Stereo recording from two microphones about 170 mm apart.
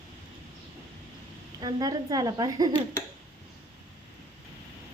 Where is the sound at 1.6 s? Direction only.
25° right (ahead or behind).